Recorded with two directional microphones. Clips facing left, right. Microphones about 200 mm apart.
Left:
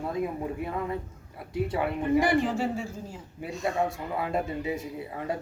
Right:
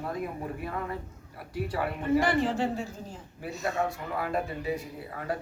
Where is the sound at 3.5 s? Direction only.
Centre (ahead or behind).